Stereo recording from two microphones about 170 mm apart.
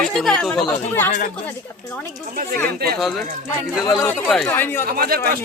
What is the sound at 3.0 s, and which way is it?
A woman's voice, centre (ahead or behind).